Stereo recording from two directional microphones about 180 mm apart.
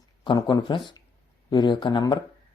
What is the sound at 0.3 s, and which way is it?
Speech, 25° left (ahead or behind).